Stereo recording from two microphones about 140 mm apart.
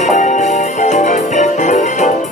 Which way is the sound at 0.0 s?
60° left (ahead or behind).